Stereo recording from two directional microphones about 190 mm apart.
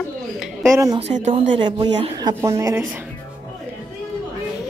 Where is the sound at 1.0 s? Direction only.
35° right (ahead or behind).